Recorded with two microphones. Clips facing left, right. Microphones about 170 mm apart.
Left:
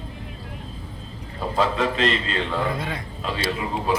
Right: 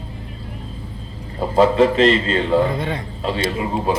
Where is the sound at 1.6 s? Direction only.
35° right (ahead or behind).